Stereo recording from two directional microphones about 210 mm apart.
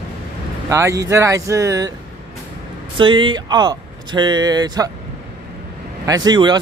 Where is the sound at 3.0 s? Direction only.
25° right (ahead or behind).